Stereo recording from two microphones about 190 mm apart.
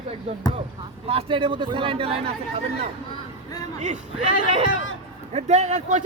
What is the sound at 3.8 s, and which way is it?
A man's voice, 40° right (ahead or behind).